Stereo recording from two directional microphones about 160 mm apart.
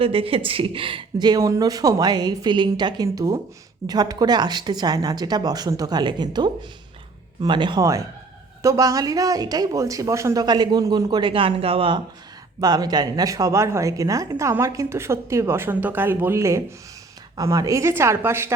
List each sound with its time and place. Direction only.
0.0 s a woman's voice: 35° right (ahead or behind); by 18.5 s 15° right (ahead or behind)